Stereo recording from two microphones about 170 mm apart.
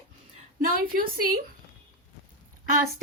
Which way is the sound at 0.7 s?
55° right (ahead or behind).